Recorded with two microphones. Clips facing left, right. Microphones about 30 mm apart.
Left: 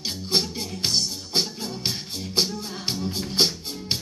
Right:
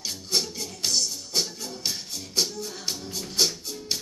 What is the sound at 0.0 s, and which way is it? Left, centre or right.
Music, left.